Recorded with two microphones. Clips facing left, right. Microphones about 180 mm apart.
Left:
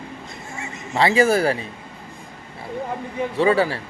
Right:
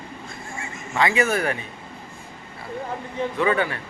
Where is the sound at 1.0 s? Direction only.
30° left (ahead or behind).